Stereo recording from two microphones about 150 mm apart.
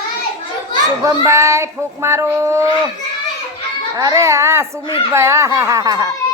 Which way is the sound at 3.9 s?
20° right (ahead or behind).